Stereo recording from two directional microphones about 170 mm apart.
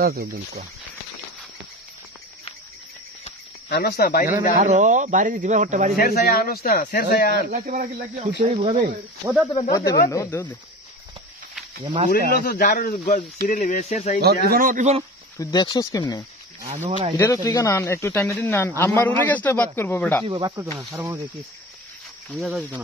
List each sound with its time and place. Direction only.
0.0 s speech: 65° right (ahead or behind)
3.7 s speech: 60° left (ahead or behind)
4.6 s speech: 45° right (ahead or behind)
5.9 s speech: 60° left (ahead or behind)
7.4 s speech: 60° right (ahead or behind)
8.5 s speech: 35° right (ahead or behind)
9.2 s speech: 5° right (ahead or behind)
9.5 s speech: 25° left (ahead or behind)
12.1 s speech: 55° left (ahead or behind)
14.2 s speech: 65° right (ahead or behind); by 15.0 s 45° right (ahead or behind)
15.3 s speech: 20° left (ahead or behind)
20.2 s speech: 25° right (ahead or behind)
20.9 s speech: 10° right (ahead or behind)
22.3 s speech: 5° right (ahead or behind)